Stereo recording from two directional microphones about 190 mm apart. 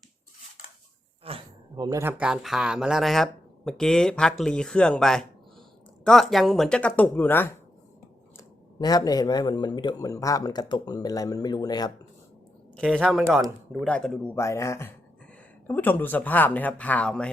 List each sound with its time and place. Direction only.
1.2 s speech: 25° right (ahead or behind); by 11.9 s 20° left (ahead or behind)
12.7 s speech: 5° left (ahead or behind)